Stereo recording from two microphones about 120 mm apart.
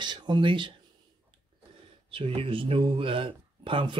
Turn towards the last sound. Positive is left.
turn(degrees=-45)  # may be behind; listen again after turning